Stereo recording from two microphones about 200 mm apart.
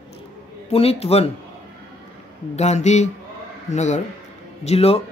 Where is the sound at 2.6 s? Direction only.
35° left (ahead or behind).